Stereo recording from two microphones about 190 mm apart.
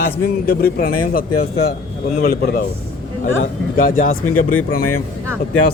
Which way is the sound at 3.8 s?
45° left (ahead or behind).